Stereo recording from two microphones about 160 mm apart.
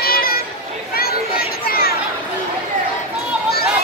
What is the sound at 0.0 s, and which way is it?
Chatter, 70° left (ahead or behind).